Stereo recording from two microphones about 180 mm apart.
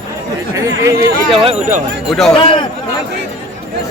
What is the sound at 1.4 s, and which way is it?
Speech, 40° right (ahead or behind).